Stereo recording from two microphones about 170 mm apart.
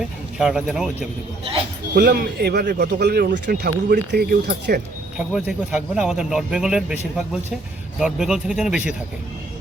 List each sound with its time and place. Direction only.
0.0 s speech: 5° right (ahead or behind)
2.0 s speech: 75° right (ahead or behind)
5.1 s speech: 5° right (ahead or behind)